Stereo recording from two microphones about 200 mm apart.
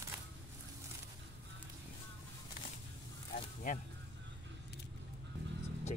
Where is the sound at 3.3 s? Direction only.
40° left (ahead or behind).